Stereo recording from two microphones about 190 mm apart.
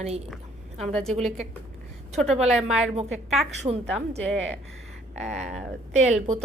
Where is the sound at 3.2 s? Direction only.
Centre (ahead or behind).